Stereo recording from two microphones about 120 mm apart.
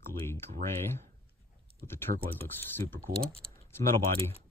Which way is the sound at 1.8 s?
20° left (ahead or behind).